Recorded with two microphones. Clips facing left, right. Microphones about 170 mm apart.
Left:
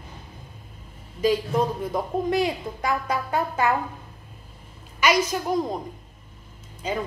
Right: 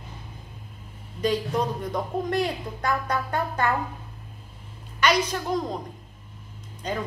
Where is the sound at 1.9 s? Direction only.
5° left (ahead or behind).